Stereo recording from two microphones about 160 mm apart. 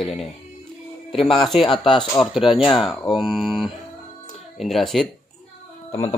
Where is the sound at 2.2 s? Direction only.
15° left (ahead or behind).